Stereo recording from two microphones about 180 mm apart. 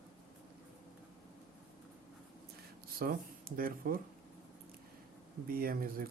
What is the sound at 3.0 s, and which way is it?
Speech, 55° right (ahead or behind).